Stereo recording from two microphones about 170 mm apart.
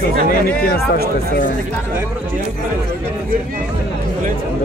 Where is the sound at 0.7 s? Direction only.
55° left (ahead or behind).